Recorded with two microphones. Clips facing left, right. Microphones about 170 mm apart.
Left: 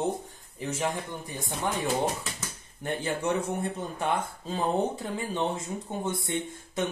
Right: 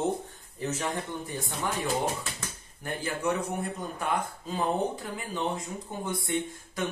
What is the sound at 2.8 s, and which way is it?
A man's voice, 25° left (ahead or behind).